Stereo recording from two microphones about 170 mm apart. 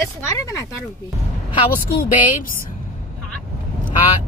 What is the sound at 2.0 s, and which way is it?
Speech, 55° left (ahead or behind).